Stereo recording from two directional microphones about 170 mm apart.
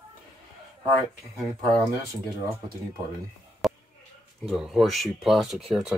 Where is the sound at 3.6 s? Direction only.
Centre (ahead or behind).